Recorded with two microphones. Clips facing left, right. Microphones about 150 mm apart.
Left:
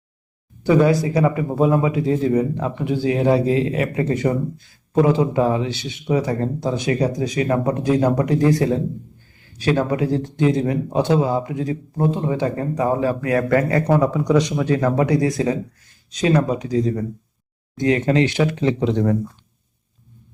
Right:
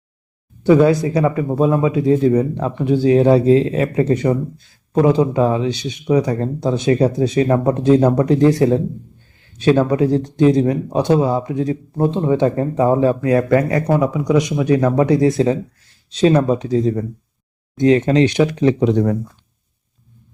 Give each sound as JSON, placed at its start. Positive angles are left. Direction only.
{"t": 1.2, "sound": "speech", "side_deg": 15}
{"t": 1.9, "sound": "speech", "side_deg": -25}